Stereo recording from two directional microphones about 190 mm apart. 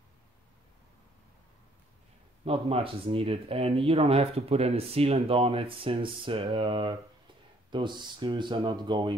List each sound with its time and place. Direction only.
2.4 s speech: 30° right (ahead or behind)